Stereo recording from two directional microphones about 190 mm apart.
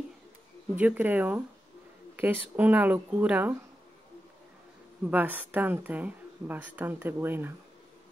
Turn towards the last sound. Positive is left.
turn(degrees=-10)  # may be behind; listen again after turning